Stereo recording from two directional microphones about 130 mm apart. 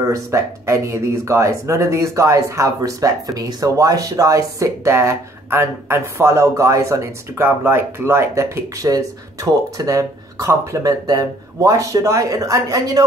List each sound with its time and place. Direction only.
0.1 s speech: 20° right (ahead or behind)